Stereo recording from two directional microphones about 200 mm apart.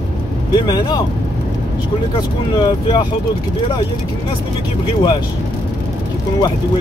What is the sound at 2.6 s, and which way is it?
Speech, 20° left (ahead or behind).